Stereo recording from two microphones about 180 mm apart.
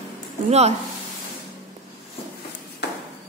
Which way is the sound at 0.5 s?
35° right (ahead or behind).